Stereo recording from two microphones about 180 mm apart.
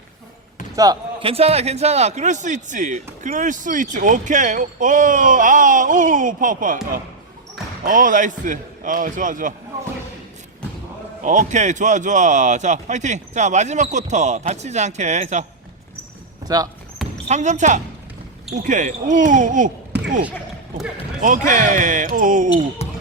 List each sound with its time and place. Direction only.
1.2 s speech: 35° right (ahead or behind)
7.9 s speech: 45° right (ahead or behind)
11.2 s speech: 45° right (ahead or behind)
17.2 s speech: 40° right (ahead or behind)
21.2 s speech: 45° right (ahead or behind)
22.8 s basketball bounce: 35° left (ahead or behind)